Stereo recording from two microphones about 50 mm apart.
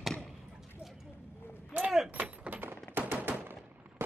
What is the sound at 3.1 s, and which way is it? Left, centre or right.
Gunshot, right.